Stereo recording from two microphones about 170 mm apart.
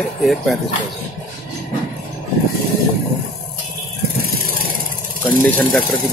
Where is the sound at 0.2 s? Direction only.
Centre (ahead or behind).